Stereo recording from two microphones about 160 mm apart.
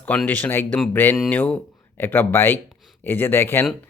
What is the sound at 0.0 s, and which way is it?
Speech, 10° left (ahead or behind).